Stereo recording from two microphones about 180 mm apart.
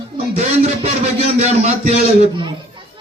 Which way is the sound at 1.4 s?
40° right (ahead or behind).